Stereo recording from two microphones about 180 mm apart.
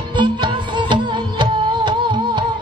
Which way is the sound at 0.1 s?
25° right (ahead or behind).